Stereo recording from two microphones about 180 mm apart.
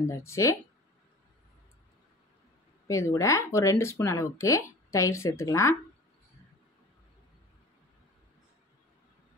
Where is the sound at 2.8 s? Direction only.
15° left (ahead or behind).